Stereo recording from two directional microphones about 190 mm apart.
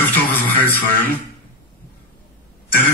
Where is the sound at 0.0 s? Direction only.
10° left (ahead or behind).